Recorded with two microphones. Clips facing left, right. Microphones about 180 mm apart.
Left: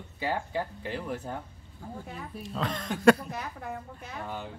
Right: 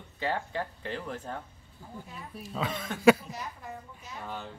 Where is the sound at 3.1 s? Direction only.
60° left (ahead or behind).